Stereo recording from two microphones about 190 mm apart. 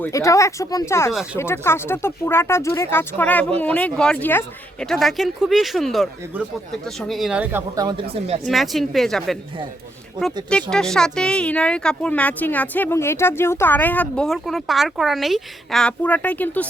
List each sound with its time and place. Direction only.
0.0 s speech: 15° left (ahead or behind)
1.1 s speech: 5° right (ahead or behind)
1.4 s speech: 15° left (ahead or behind); by 7.6 s 5° right (ahead or behind)
7.8 s speech: 20° right (ahead or behind)
8.4 s speech: centre (ahead or behind)
10.5 s speech: 5° left (ahead or behind)